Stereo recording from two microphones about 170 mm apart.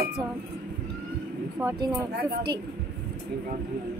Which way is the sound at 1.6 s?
15° right (ahead or behind).